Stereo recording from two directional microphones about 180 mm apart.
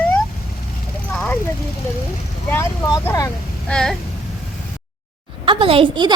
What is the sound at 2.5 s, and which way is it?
Speech, 20° left (ahead or behind).